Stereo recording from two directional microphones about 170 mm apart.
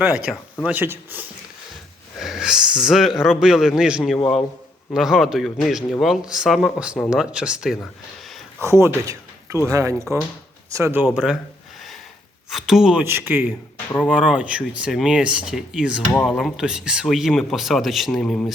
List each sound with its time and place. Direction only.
0.0 s speech: 10° right (ahead or behind)
8.6 s speech: 15° right (ahead or behind)
12.5 s speech: centre (ahead or behind)
13.9 s speech: 5° left (ahead or behind)
14.2 s speech: 5° right (ahead or behind)